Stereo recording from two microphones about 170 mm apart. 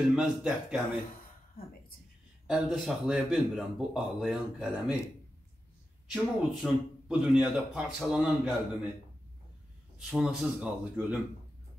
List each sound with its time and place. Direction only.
0.1 s speech: 5° right (ahead or behind)
1.6 s a woman's voice: 60° left (ahead or behind)
2.4 s speech: 5° right (ahead or behind)
6.1 s speech: 5° right (ahead or behind)
9.9 s speech: centre (ahead or behind)